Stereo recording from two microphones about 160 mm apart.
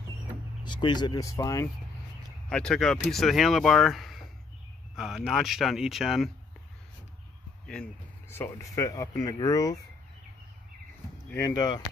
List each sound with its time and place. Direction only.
0.7 s speech: 30° left (ahead or behind)
2.5 s speech: 5° left (ahead or behind)
7.6 s speech: 5° left (ahead or behind); by 9.8 s 20° left (ahead or behind)
11.2 s speech: 15° left (ahead or behind)